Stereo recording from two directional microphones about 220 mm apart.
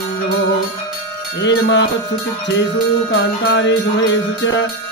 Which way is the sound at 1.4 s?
55° left (ahead or behind).